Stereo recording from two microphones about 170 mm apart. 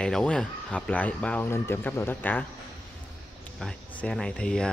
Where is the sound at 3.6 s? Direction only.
5° left (ahead or behind).